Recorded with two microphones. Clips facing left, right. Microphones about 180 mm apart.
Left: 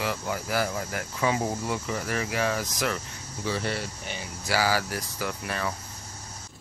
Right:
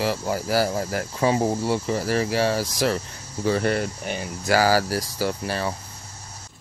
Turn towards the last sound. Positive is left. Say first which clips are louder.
# right 5 dB
turn(degrees=-30)  # may be behind; listen again after turning